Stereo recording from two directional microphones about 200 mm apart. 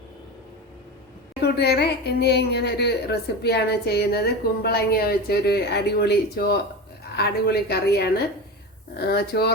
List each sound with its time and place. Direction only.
1.5 s a woman's voice: 55° left (ahead or behind)